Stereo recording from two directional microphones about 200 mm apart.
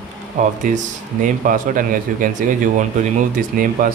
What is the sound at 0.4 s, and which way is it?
Speech, 40° right (ahead or behind).